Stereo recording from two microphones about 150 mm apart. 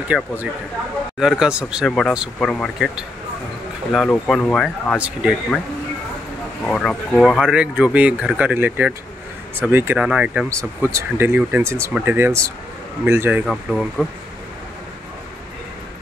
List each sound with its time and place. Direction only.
0.1 s speech: centre (ahead or behind)
1.4 s speech: 5° right (ahead or behind)
1.9 s speech: 5° left (ahead or behind)
3.9 s speech: 5° left (ahead or behind)
4.9 s speech: 5° right (ahead or behind)
6.6 s speech: 5° left (ahead or behind)
10.5 s speech: 20° right (ahead or behind)
13.5 s speech: centre (ahead or behind)